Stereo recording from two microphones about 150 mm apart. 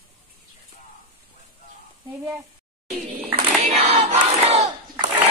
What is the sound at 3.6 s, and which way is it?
Crowd, 40° right (ahead or behind).